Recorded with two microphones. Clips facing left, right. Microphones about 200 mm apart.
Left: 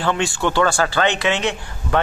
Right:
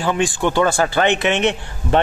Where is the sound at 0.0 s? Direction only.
15° right (ahead or behind).